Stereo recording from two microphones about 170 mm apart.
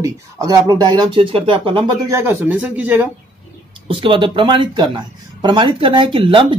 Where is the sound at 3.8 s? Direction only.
30° right (ahead or behind).